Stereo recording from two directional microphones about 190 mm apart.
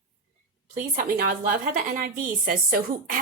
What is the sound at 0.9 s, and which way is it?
A woman's voice, 45° right (ahead or behind).